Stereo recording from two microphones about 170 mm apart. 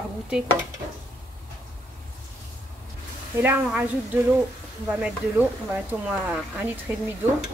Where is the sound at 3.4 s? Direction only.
10° right (ahead or behind).